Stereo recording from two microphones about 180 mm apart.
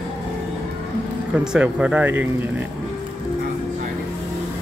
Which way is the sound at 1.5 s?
5° right (ahead or behind).